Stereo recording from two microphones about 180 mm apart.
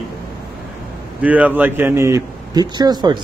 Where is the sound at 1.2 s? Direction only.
10° right (ahead or behind).